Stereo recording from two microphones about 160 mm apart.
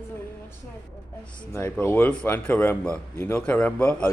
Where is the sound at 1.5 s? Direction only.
15° left (ahead or behind).